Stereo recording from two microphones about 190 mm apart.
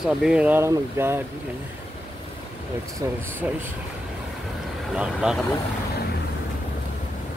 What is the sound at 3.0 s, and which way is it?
Speech, 15° right (ahead or behind).